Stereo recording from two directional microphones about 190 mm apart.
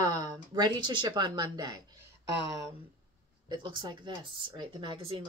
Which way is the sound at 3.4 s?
25° right (ahead or behind).